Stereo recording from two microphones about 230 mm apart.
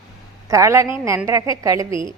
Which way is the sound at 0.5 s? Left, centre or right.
Centre.